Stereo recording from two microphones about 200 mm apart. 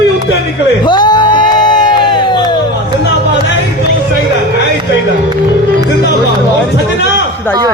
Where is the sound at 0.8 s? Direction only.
20° left (ahead or behind).